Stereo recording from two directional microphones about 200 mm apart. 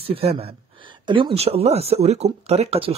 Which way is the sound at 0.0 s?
30° right (ahead or behind).